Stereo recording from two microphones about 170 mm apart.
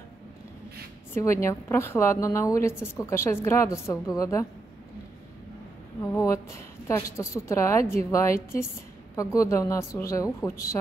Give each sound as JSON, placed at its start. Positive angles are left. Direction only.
{"t": 1.1, "sound": "a woman's voice", "side_deg": 15}
{"t": 6.1, "sound": "a woman's voice", "side_deg": 15}